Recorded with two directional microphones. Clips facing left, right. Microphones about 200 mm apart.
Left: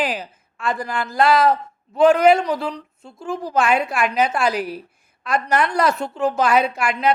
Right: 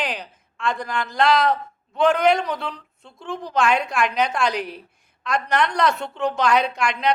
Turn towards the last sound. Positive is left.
turn(degrees=5)  # may be behind; listen again after turning